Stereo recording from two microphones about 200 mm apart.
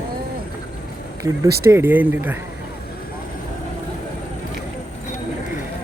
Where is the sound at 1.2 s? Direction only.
15° right (ahead or behind).